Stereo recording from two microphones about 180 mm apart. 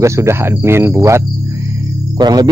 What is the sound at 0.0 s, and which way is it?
Cricket, 15° right (ahead or behind).